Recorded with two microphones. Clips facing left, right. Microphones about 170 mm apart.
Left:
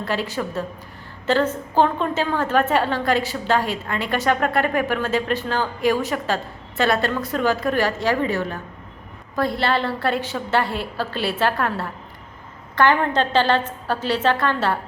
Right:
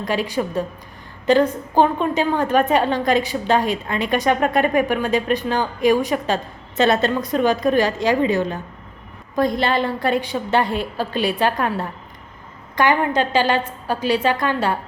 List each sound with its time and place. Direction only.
0.0 s a woman's voice: 15° right (ahead or behind)